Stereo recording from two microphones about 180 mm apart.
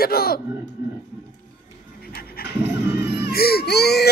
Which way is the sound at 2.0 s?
55° left (ahead or behind).